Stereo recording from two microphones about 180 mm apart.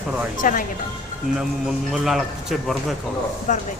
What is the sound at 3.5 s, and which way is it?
Speech, 45° left (ahead or behind).